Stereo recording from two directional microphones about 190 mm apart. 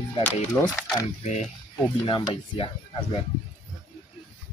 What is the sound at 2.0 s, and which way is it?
Speech, 25° left (ahead or behind).